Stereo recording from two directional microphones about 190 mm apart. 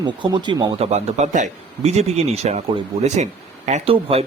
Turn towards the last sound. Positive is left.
turn(degrees=-30)  # may be behind; listen again after turning